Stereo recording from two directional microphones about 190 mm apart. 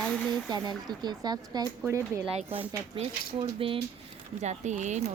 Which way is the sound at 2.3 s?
30° right (ahead or behind).